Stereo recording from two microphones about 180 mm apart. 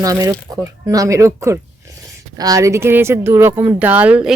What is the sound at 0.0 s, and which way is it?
Speech, 20° right (ahead or behind).